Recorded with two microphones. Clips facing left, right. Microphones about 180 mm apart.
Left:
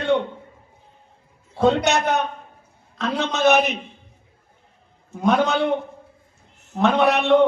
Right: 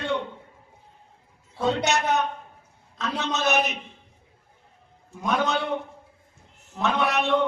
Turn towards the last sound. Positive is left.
turn(degrees=55)  # may be behind; listen again after turning